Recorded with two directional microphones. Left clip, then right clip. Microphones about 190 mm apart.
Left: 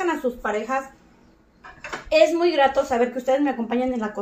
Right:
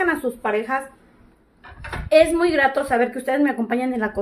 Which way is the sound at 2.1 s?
35° right (ahead or behind).